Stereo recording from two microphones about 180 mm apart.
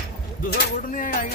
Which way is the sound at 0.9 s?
50° left (ahead or behind).